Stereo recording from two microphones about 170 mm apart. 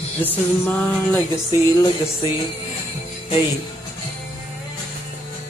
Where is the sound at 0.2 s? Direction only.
10° left (ahead or behind).